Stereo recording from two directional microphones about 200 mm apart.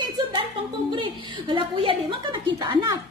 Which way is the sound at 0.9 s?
25° right (ahead or behind).